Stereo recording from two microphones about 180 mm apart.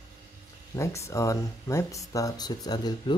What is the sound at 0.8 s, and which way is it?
Speech, 15° left (ahead or behind).